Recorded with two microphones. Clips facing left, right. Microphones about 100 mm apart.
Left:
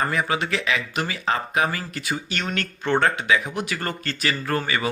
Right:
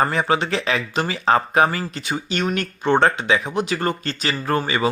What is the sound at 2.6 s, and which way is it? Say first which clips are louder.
Speech: right 3 dB; 20° right (ahead or behind).